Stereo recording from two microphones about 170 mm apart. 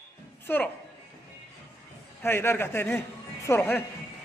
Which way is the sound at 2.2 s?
15° left (ahead or behind).